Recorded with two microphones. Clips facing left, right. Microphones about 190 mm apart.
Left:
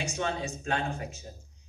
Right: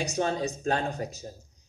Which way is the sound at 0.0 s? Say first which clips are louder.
Right 4 dB; 40° right (ahead or behind).